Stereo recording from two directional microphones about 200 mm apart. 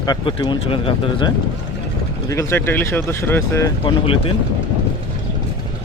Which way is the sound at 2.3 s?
15° left (ahead or behind).